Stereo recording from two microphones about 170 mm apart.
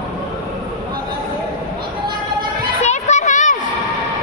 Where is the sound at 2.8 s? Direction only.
45° left (ahead or behind).